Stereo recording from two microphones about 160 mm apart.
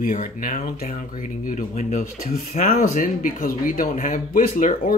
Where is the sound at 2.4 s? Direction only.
60° left (ahead or behind).